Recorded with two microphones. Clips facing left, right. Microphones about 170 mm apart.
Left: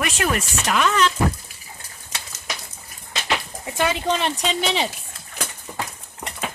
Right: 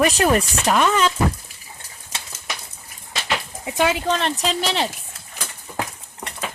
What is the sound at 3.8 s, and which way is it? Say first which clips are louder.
Speech: even; 5° right (ahead or behind).